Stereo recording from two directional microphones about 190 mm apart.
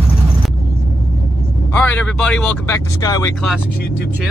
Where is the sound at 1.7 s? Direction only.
10° left (ahead or behind).